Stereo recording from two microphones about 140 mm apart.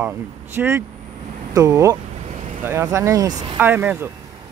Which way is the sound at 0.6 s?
15° right (ahead or behind).